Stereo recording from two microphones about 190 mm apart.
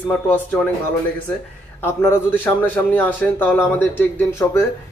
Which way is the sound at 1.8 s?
10° left (ahead or behind).